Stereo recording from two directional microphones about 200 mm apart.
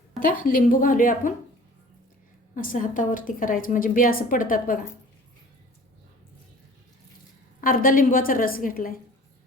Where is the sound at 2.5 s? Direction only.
40° left (ahead or behind).